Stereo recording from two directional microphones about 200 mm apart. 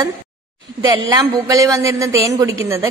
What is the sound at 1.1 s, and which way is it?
A woman's voice, 15° right (ahead or behind).